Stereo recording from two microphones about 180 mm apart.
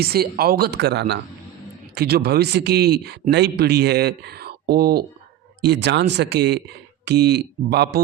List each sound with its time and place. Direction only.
0.0 s speech: 60° right (ahead or behind)